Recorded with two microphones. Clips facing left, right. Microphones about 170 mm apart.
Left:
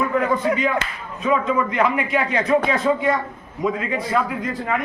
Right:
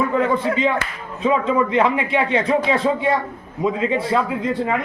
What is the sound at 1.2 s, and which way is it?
A man's voice, 25° right (ahead or behind).